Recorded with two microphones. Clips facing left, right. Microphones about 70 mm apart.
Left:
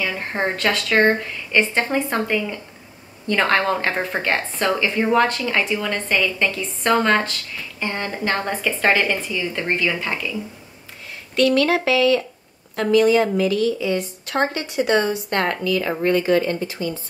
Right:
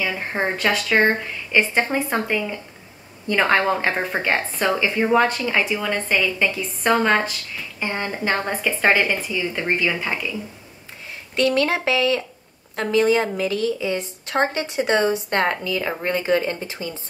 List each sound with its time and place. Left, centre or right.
0.0 s a woman's voice: centre
11.3 s a woman's voice: right